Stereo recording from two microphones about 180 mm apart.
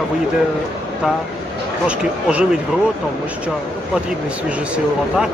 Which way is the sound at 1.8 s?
5° right (ahead or behind).